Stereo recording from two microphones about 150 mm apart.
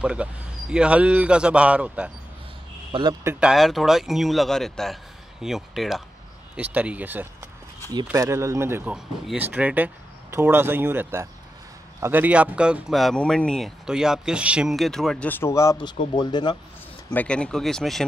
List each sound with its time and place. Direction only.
0.0 s speech: 5° right (ahead or behind)
2.9 s speech: 30° right (ahead or behind)
3.3 s speech: 5° right (ahead or behind); by 16.5 s 30° left (ahead or behind)
17.1 s speech: 10° left (ahead or behind)